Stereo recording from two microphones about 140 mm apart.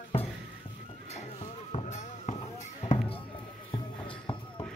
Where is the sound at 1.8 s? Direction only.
55° left (ahead or behind).